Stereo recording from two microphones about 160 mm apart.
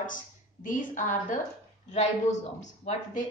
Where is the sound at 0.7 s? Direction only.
55° left (ahead or behind).